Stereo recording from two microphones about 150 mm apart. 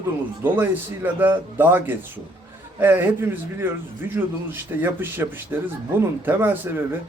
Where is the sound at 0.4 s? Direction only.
15° right (ahead or behind).